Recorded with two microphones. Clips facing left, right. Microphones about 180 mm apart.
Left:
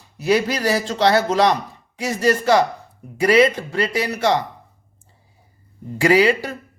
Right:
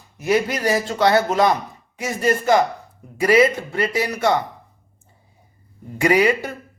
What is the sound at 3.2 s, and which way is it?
Speech, 30° left (ahead or behind).